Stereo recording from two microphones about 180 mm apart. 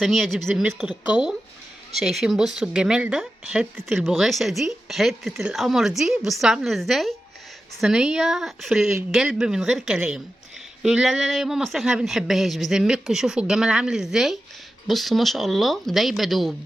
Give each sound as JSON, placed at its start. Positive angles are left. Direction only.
{"t": 0.0, "sound": "speech", "side_deg": 0}